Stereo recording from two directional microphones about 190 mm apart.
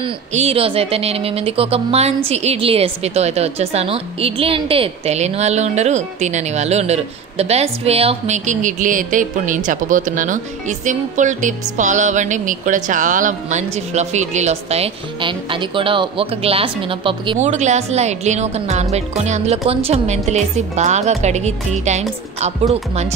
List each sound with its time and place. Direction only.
0.0 s speech: 35° right (ahead or behind)